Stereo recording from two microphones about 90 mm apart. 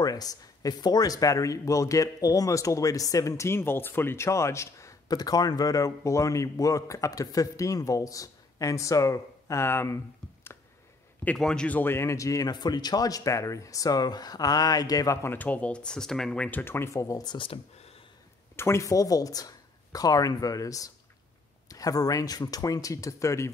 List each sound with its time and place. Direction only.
0.0 s speech: 45° left (ahead or behind)
5.0 s speech: 45° left (ahead or behind); by 9.9 s 30° left (ahead or behind)
11.3 s speech: 10° left (ahead or behind); by 12.4 s 35° left (ahead or behind)
12.4 s speech: 50° left (ahead or behind)
15.2 s speech: 20° left (ahead or behind); by 17.4 s 45° left (ahead or behind)
17.4 s speech: 90° left
18.6 s speech: 35° left (ahead or behind)